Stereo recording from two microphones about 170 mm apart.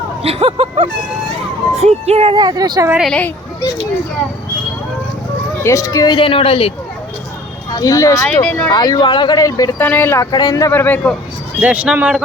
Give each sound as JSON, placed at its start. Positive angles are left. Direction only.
{"t": 0.2, "sound": "speech", "side_deg": -35}
{"t": 2.4, "sound": "speech", "side_deg": -25}
{"t": 2.9, "sound": "speech", "side_deg": 0}
{"t": 3.2, "sound": "children playing", "side_deg": 10}
{"t": 5.6, "sound": "speech", "side_deg": 20}
{"t": 7.7, "sound": "speech", "side_deg": 20}
{"t": 8.3, "sound": "a man's voice", "side_deg": 5}
{"t": 8.7, "sound": "a man's voice", "side_deg": 25}
{"t": 11.6, "sound": "a man's voice", "side_deg": -10}